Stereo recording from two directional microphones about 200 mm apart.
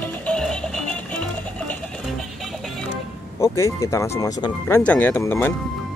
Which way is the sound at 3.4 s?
15° left (ahead or behind).